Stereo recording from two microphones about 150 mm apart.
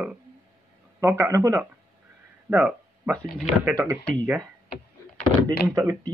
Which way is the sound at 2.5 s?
10° right (ahead or behind).